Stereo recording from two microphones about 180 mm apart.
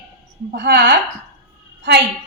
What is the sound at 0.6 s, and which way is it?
Speech, 60° right (ahead or behind).